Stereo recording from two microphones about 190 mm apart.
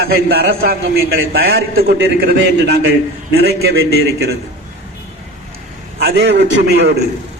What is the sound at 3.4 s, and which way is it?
Speech, 75° right (ahead or behind).